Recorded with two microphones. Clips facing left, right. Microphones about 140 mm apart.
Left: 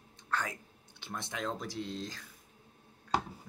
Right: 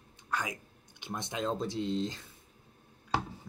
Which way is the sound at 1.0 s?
20° right (ahead or behind).